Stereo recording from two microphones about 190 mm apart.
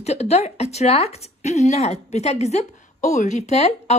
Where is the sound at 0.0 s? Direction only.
35° left (ahead or behind).